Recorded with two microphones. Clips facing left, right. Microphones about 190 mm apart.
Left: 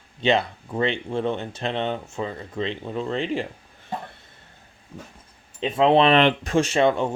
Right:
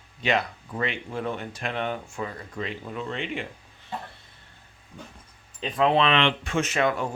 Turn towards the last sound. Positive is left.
turn(degrees=25)  # may be behind; listen again after turning